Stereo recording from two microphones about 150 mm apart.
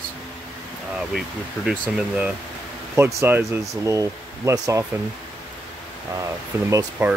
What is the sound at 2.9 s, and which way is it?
Speech, 20° right (ahead or behind).